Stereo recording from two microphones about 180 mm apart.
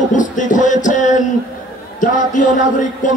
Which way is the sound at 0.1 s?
45° left (ahead or behind).